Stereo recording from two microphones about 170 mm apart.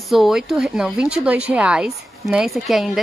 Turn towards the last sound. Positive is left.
turn(degrees=0)  # may be behind; listen again after turning